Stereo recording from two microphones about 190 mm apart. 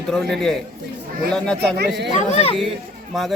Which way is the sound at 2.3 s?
35° left (ahead or behind).